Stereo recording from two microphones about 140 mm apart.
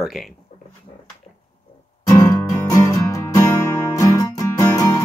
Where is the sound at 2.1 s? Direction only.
25° left (ahead or behind).